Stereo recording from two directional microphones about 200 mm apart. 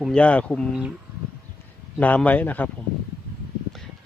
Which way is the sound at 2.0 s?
5° left (ahead or behind).